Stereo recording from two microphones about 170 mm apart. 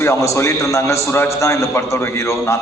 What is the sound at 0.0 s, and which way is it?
A man's voice, 15° left (ahead or behind).